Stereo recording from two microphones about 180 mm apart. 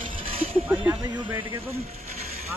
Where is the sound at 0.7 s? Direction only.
10° right (ahead or behind).